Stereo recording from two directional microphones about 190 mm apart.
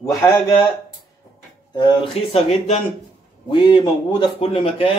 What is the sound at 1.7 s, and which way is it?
Speech, 25° left (ahead or behind).